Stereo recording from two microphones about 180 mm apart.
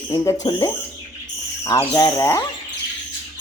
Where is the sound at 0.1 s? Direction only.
20° left (ahead or behind).